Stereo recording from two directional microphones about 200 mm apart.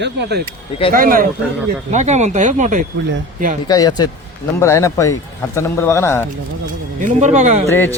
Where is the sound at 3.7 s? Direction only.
20° left (ahead or behind).